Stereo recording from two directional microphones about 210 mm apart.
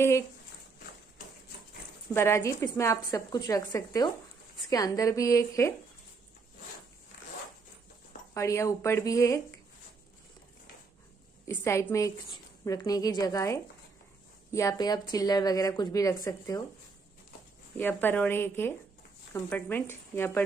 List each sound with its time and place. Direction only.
2.1 s a woman's voice: 10° left (ahead or behind)
8.4 s a woman's voice: 15° left (ahead or behind)
11.4 s a woman's voice: 10° left (ahead or behind)
17.7 s a woman's voice: 10° left (ahead or behind)